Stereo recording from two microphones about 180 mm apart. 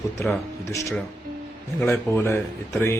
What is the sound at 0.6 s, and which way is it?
A man's voice, 15° left (ahead or behind).